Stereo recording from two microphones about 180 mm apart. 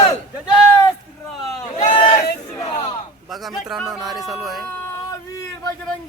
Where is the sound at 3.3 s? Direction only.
Centre (ahead or behind).